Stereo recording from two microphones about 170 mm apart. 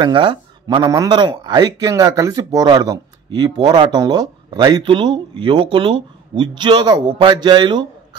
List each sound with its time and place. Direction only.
0.0 s speech: 25° right (ahead or behind)